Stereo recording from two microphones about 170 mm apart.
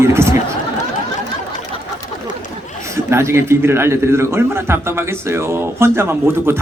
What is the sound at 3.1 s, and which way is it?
Speech, 15° right (ahead or behind).